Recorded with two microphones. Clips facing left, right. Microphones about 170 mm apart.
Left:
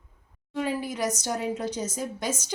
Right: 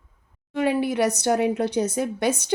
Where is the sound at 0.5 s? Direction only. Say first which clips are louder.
Right 7 dB; 70° right (ahead or behind).